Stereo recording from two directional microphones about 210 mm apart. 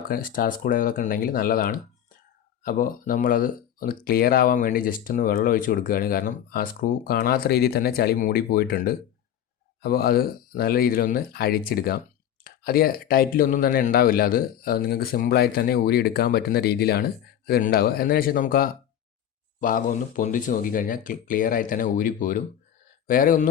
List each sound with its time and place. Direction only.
0.1 s speech: 40° left (ahead or behind)